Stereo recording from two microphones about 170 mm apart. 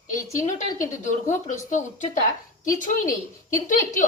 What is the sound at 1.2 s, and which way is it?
Speech, 45° left (ahead or behind).